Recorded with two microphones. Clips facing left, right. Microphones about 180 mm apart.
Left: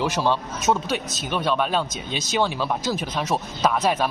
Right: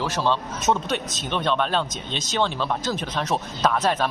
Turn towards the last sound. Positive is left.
turn(degrees=5)  # may be behind; listen again after turning